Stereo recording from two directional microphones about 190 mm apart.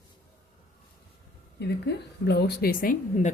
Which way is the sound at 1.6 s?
60° left (ahead or behind).